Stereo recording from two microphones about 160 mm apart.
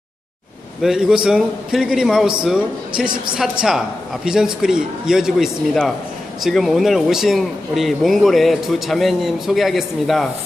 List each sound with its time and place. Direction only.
0.8 s speech: 5° right (ahead or behind)